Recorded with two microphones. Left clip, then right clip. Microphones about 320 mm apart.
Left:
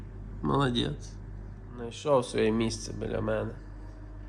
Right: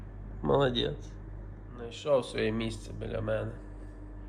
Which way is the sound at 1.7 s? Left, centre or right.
Centre.